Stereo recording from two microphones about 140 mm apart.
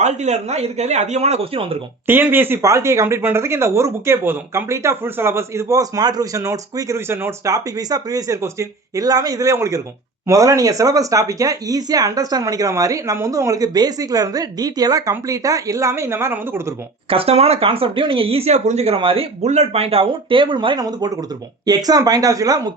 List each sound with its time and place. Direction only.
0.0 s speech: 55° right (ahead or behind)
2.0 s speech: 15° right (ahead or behind)
17.1 s speech: 45° right (ahead or behind)
18.9 s speech: 40° right (ahead or behind)